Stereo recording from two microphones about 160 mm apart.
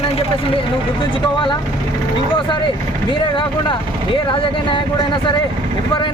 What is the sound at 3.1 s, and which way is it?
Speech, 30° left (ahead or behind).